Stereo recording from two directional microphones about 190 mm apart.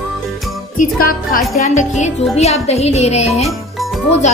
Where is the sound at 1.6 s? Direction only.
40° left (ahead or behind).